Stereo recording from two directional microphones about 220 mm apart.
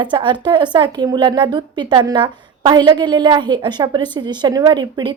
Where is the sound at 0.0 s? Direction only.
20° right (ahead or behind).